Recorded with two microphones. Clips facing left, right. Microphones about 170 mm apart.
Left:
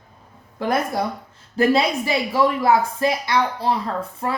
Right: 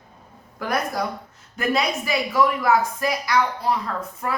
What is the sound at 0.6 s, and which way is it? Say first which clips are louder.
Speech: left 3 dB; 25° left (ahead or behind).